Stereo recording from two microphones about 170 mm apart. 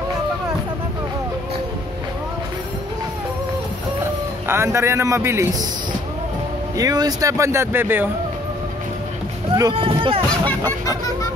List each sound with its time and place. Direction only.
4.5 s speech: 15° right (ahead or behind)
6.8 s speech: 20° right (ahead or behind)
9.6 s speech: 30° right (ahead or behind)